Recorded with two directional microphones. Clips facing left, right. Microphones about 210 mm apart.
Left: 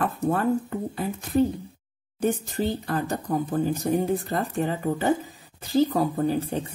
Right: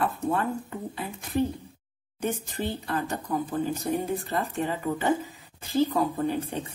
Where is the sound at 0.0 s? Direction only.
45° left (ahead or behind).